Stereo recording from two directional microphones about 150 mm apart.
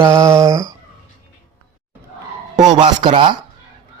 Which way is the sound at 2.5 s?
30° right (ahead or behind).